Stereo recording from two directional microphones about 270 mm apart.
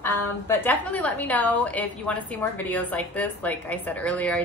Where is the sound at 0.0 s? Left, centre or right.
Centre.